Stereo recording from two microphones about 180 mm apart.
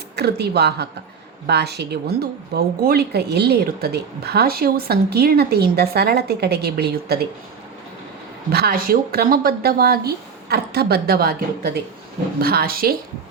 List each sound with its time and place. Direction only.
0.2 s speech: 65° right (ahead or behind)
8.5 s speech: 55° right (ahead or behind)